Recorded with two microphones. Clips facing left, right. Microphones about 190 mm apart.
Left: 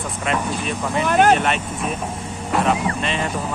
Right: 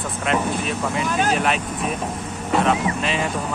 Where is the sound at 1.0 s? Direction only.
65° left (ahead or behind).